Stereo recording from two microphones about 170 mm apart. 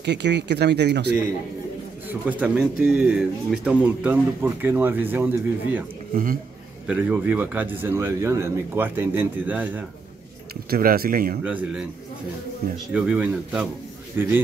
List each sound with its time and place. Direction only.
0.0 s speech: 90° right
2.0 s speech: 10° right (ahead or behind)
6.9 s speech: 10° right (ahead or behind)
10.5 s speech: 60° right (ahead or behind)
11.4 s speech: 10° right (ahead or behind)
12.9 s speech: 5° right (ahead or behind)